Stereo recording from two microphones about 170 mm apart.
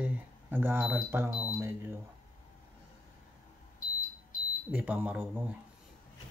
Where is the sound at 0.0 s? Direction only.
10° right (ahead or behind).